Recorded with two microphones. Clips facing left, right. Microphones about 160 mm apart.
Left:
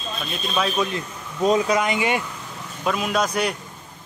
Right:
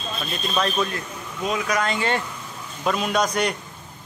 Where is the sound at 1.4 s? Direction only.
35° left (ahead or behind).